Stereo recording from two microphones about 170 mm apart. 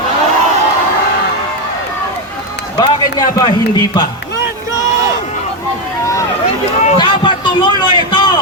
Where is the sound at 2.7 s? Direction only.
25° left (ahead or behind).